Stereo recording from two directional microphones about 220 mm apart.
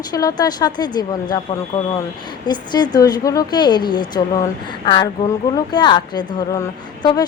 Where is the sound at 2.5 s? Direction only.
20° left (ahead or behind).